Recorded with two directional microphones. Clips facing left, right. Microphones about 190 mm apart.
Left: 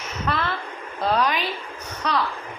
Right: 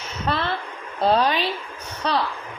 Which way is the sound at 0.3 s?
30° right (ahead or behind).